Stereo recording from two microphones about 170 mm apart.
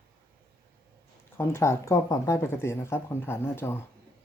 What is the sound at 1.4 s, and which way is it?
Speech, 15° left (ahead or behind).